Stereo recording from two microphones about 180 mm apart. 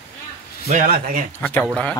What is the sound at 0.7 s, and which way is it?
Speech, 50° right (ahead or behind).